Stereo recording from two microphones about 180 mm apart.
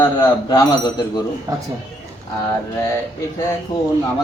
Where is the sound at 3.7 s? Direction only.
25° left (ahead or behind).